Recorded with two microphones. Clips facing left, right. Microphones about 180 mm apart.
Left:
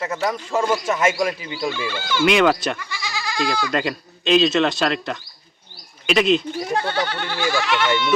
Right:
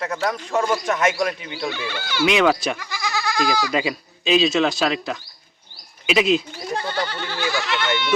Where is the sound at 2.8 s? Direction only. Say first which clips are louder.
Right 3 dB; 65° right (ahead or behind).